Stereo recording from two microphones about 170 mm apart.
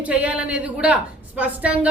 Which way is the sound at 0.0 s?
5° right (ahead or behind).